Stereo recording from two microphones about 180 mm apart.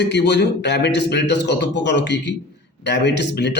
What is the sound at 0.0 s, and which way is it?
A man's voice, 70° left (ahead or behind).